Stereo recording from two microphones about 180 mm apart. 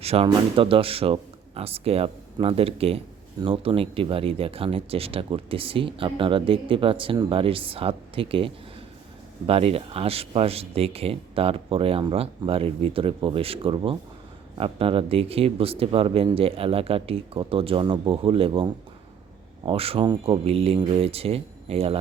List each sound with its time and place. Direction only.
0.0 s speech: 35° right (ahead or behind)